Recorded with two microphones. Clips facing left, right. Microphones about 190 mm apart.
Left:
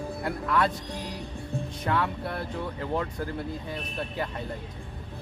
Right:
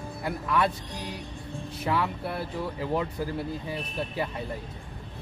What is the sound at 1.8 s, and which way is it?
Speech, 5° right (ahead or behind).